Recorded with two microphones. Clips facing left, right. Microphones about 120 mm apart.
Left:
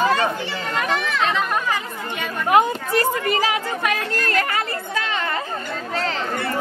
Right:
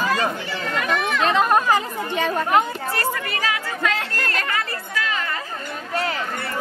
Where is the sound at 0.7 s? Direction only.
30° left (ahead or behind).